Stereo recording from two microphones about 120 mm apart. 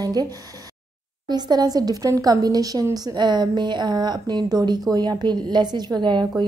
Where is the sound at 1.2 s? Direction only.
35° right (ahead or behind).